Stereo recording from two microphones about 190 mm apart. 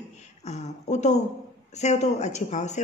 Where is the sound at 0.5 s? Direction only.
35° left (ahead or behind).